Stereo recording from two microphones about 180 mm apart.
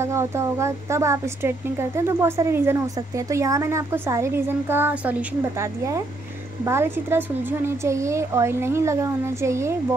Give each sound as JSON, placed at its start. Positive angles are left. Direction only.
{"t": 0.0, "sound": "a woman's voice", "side_deg": -15}